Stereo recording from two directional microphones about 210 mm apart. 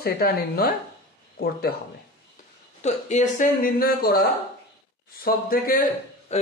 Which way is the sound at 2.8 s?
35° left (ahead or behind).